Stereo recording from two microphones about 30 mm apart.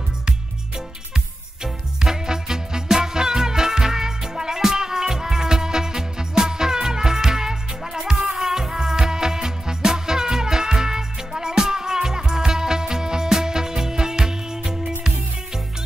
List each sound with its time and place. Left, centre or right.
1.1 s music: centre